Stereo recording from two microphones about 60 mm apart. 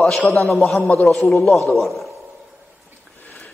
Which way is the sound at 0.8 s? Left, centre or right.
Left.